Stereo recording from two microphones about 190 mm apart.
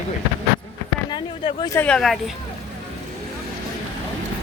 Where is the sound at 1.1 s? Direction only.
25° left (ahead or behind).